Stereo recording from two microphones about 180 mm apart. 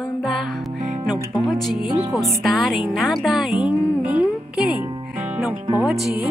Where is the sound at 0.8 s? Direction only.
40° right (ahead or behind).